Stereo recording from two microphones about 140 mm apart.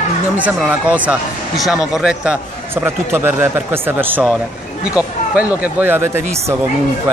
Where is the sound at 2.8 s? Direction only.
15° right (ahead or behind).